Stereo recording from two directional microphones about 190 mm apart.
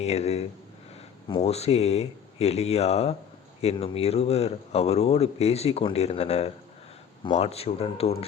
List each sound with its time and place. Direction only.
0.0 s speech: 35° left (ahead or behind)